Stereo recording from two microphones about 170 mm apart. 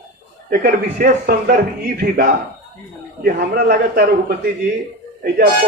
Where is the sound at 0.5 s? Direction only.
50° right (ahead or behind).